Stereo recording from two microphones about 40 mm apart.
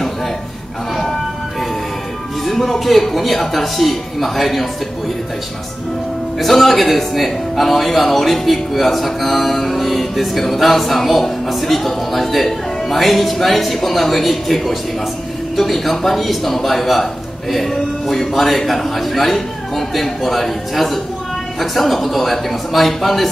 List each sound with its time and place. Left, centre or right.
0.9 s music: centre
2.4 s a man's voice: centre
6.4 s a man's voice: centre